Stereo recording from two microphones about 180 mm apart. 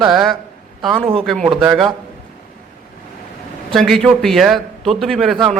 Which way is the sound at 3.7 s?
Centre (ahead or behind).